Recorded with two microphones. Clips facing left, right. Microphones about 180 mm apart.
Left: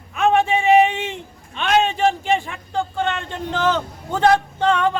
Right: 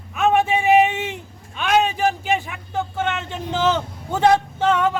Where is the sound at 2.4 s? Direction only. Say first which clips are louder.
Left 2 dB; 10° right (ahead or behind).